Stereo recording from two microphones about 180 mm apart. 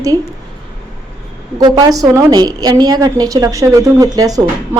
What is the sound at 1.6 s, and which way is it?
A woman's voice, 20° right (ahead or behind).